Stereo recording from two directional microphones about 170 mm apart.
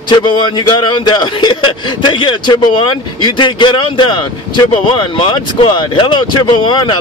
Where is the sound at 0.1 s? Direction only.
25° left (ahead or behind).